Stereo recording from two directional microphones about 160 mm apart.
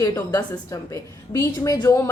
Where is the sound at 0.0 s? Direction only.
20° left (ahead or behind).